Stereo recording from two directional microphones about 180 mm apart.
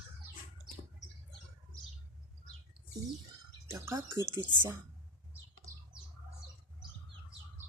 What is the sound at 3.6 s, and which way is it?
Speech, 15° right (ahead or behind).